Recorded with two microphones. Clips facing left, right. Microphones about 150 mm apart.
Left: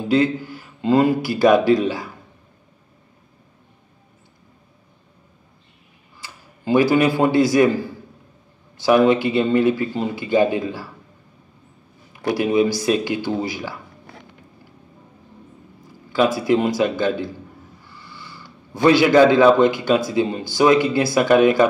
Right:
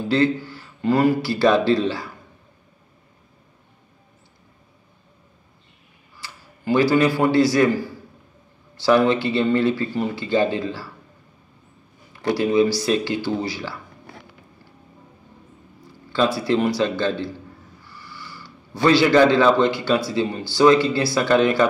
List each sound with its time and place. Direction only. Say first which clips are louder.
0.0 s speech: left 1 dB; 15° left (ahead or behind)
6.2 s a man's voice: even; 20° left (ahead or behind)
12.1 s a man's voice: even; 15° left (ahead or behind)
16.4 s speech: left 2 dB; 15° left (ahead or behind)
17.8 s a sound: right 3 dB; 20° left (ahead or behind)
20.1 s speech: left 2 dB; 15° left (ahead or behind)